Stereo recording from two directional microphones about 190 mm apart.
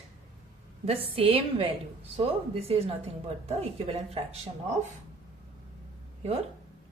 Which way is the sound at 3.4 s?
35° right (ahead or behind).